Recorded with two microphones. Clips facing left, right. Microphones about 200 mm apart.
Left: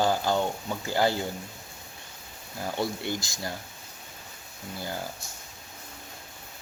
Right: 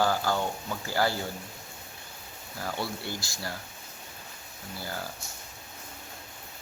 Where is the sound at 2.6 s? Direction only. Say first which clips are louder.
Left 4 dB; 20° left (ahead or behind).